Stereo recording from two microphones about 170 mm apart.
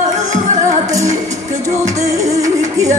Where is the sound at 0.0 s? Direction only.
45° right (ahead or behind).